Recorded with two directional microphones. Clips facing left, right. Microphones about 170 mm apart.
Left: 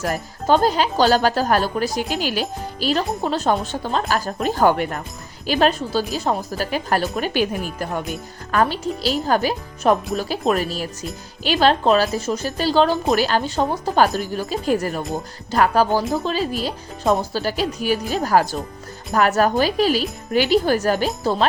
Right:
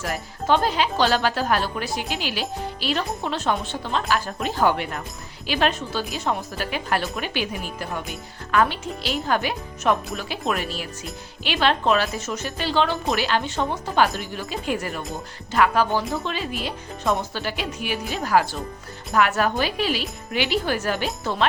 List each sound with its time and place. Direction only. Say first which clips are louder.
0.0 s speech: left 4 dB; 40° left (ahead or behind)